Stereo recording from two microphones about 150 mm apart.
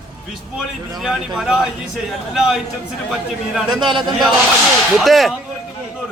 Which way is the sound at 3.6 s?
30° right (ahead or behind).